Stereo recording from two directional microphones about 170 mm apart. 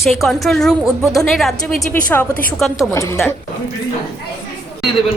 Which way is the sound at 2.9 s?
15° left (ahead or behind).